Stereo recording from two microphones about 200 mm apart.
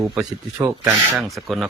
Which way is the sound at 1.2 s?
Centre (ahead or behind).